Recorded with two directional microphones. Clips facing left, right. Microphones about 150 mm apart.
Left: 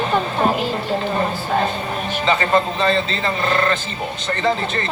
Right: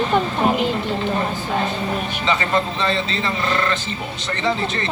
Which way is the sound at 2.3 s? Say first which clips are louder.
Left 3 dB; 40° left (ahead or behind).